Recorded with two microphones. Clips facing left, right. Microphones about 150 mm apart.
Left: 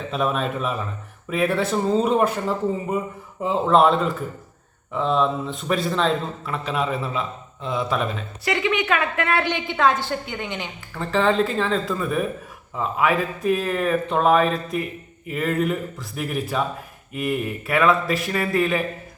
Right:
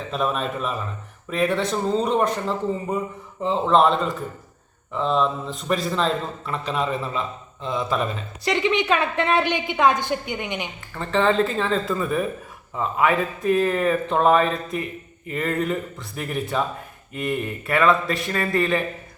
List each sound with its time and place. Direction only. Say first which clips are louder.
0.1 s a man's voice: left 1 dB; centre (ahead or behind)
8.4 s a woman's voice: right 1 dB; 25° right (ahead or behind)
10.9 s a man's voice: even; centre (ahead or behind)